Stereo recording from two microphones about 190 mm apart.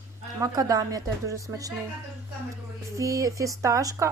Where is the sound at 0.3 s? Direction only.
20° right (ahead or behind).